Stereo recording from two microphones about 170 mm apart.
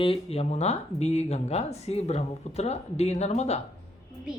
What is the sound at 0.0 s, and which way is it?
Speech, 35° left (ahead or behind).